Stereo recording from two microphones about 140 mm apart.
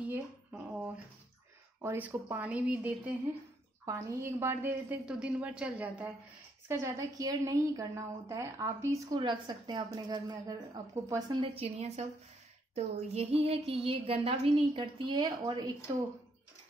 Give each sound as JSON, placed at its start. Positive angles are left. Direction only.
{"t": 0.0, "sound": "a sound", "side_deg": -10}
{"t": 1.8, "sound": "a woman's voice", "side_deg": -15}
{"t": 3.8, "sound": "a woman's voice", "side_deg": -20}
{"t": 6.7, "sound": "a woman's voice", "side_deg": -20}
{"t": 9.2, "sound": "a woman's voice", "side_deg": -35}
{"t": 11.3, "sound": "a sound", "side_deg": -45}
{"t": 13.7, "sound": "a woman's voice", "side_deg": -40}
{"t": 15.2, "sound": "a woman's voice", "side_deg": -25}